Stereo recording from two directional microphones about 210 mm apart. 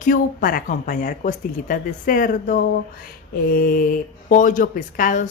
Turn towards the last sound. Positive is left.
turn(degrees=40)  # may be behind; listen again after turning